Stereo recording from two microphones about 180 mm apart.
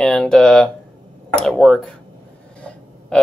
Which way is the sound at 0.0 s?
5° left (ahead or behind).